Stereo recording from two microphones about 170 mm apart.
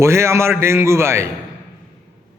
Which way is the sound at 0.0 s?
15° right (ahead or behind).